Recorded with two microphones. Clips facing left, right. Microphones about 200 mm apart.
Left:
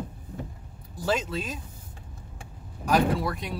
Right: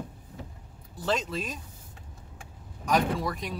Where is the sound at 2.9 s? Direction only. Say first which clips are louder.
Left 3 dB; centre (ahead or behind).